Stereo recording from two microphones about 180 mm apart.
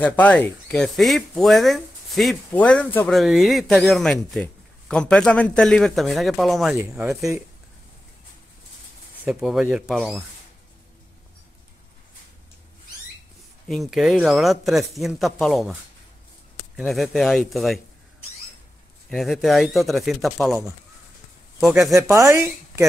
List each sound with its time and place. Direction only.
0.0 s speech: 10° left (ahead or behind)
9.2 s speech: 5° right (ahead or behind)
13.7 s speech: centre (ahead or behind)
16.7 s speech: centre (ahead or behind)
19.0 s speech: centre (ahead or behind)
21.9 s speech: 15° right (ahead or behind)